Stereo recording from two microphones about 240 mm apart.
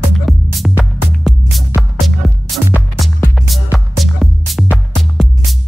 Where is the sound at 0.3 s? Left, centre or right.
Centre.